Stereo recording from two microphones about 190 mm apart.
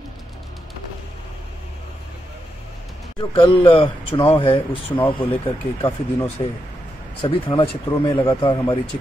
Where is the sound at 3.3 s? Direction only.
25° left (ahead or behind).